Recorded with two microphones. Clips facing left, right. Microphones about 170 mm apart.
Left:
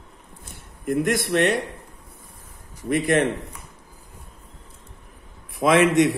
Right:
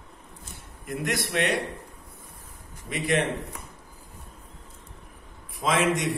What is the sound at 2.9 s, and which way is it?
Speech, 50° left (ahead or behind).